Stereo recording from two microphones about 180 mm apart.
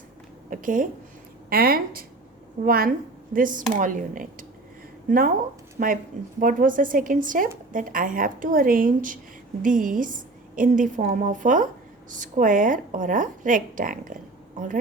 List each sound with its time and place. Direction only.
0.5 s a woman's voice: 50° right (ahead or behind)